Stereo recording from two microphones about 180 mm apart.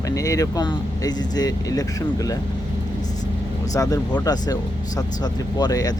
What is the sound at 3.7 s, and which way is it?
Speech, 20° left (ahead or behind).